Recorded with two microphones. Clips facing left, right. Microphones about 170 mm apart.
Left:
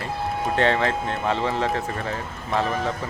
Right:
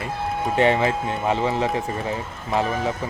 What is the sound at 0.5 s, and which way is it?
Speech, 10° right (ahead or behind).